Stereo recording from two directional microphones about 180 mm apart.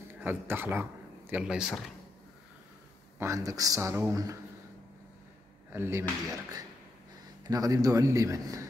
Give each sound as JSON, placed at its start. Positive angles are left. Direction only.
{"t": 0.1, "sound": "speech", "side_deg": -10}
{"t": 3.2, "sound": "a man's voice", "side_deg": -15}
{"t": 5.7, "sound": "a man's voice", "side_deg": -15}
{"t": 7.4, "sound": "a man's voice", "side_deg": -20}